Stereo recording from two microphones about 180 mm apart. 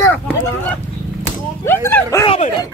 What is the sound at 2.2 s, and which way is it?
Speech, 35° left (ahead or behind).